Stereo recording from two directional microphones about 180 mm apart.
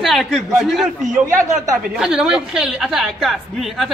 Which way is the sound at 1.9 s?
5° right (ahead or behind).